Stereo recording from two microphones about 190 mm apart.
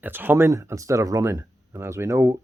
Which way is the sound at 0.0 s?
10° right (ahead or behind).